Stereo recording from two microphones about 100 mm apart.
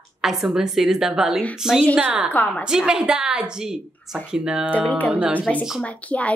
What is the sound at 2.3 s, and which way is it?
Speech, 15° left (ahead or behind).